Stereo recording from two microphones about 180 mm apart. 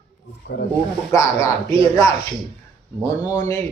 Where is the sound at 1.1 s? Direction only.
15° left (ahead or behind).